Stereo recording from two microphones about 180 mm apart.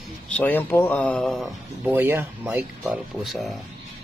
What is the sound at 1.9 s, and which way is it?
Speech, 15° right (ahead or behind).